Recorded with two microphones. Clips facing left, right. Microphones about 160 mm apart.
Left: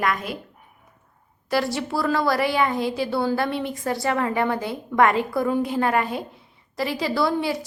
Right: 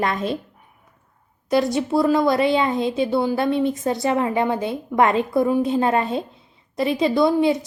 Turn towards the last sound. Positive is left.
turn(degrees=-20)  # may be behind; listen again after turning